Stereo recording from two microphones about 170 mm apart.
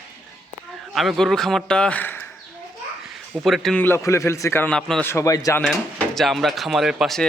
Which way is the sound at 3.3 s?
Centre (ahead or behind).